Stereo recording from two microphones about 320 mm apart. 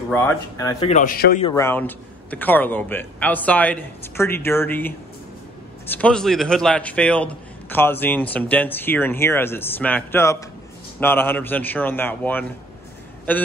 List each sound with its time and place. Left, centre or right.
0.1 s speech: centre; by 1.4 s left
1.4 s a man's voice: centre